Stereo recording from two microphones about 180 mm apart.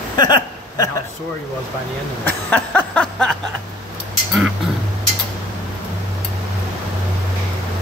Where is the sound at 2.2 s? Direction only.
5° left (ahead or behind).